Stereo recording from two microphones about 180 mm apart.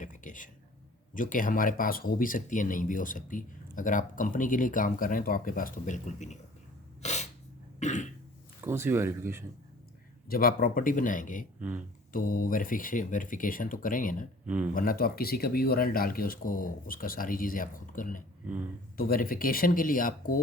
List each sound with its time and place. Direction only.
0.0 s a sound: 45° left (ahead or behind)
1.1 s speech: 45° left (ahead or behind)
7.0 s sneeze: 40° left (ahead or behind)
7.8 s cough: 40° left (ahead or behind)
8.6 s speech: 15° right (ahead or behind)
10.2 s speech: 55° left (ahead or behind)
11.6 s speech: 10° right (ahead or behind)
12.1 s speech: 50° left (ahead or behind)
14.4 s speech: 10° right (ahead or behind)
14.7 s speech: 50° left (ahead or behind)